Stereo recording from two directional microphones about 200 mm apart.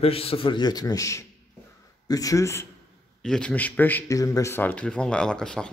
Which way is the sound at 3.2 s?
5° left (ahead or behind).